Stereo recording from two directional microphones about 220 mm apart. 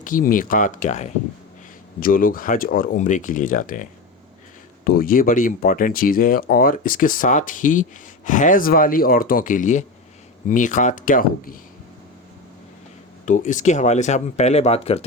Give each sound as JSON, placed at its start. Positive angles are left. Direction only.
{"t": 0.0, "sound": "speech", "side_deg": 40}
{"t": 4.9, "sound": "speech", "side_deg": 40}
{"t": 13.2, "sound": "speech", "side_deg": 35}